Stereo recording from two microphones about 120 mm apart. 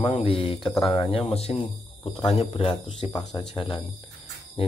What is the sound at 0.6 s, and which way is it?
Speech, centre (ahead or behind).